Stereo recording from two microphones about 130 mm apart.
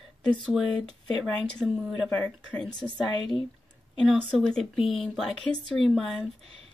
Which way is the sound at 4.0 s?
5° left (ahead or behind).